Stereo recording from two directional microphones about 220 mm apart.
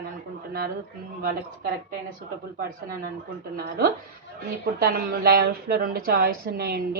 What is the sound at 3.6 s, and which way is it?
A woman's voice, 45° right (ahead or behind).